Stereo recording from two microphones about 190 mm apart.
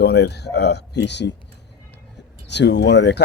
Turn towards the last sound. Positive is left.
turn(degrees=65)  # may be behind; listen again after turning